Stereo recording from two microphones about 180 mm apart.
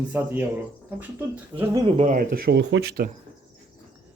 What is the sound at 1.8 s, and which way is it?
Speech, 40° right (ahead or behind).